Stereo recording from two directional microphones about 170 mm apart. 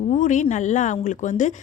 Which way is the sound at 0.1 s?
45° left (ahead or behind).